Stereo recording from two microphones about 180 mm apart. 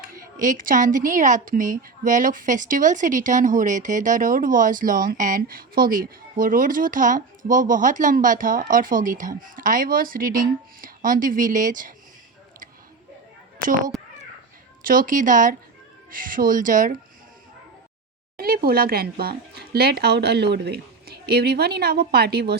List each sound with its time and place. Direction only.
0.1 s a woman's voice: 45° right (ahead or behind)
14.8 s a woman's voice: 50° right (ahead or behind)
18.3 s speech: 55° right (ahead or behind)